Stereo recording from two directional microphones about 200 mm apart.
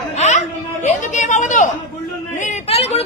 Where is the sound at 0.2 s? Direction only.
35° left (ahead or behind).